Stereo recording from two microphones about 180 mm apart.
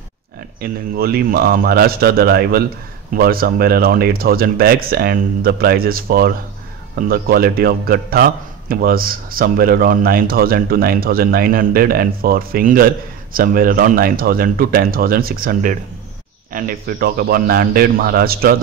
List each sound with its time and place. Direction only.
0.6 s a man's voice: 55° right (ahead or behind)